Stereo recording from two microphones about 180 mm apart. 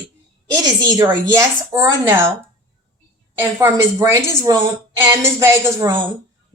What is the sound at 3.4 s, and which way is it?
A woman's voice, 15° right (ahead or behind).